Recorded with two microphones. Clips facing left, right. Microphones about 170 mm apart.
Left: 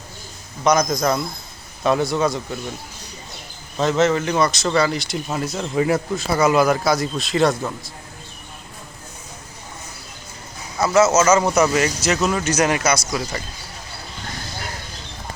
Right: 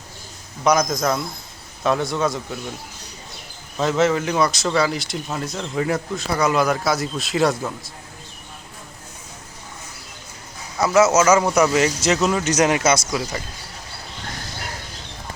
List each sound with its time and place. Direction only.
0.6 s speech: 5° right (ahead or behind)
3.8 s speech: 5° right (ahead or behind)
10.8 s a man's voice: 15° right (ahead or behind)
11.7 s speech: 20° right (ahead or behind)